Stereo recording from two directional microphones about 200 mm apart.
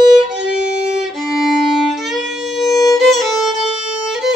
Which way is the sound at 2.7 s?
15° left (ahead or behind).